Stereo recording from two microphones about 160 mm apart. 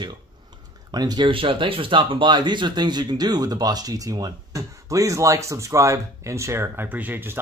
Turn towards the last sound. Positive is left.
turn(degrees=-15)  # may be behind; listen again after turning